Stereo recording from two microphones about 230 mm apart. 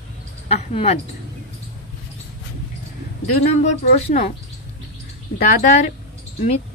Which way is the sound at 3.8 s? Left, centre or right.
Left.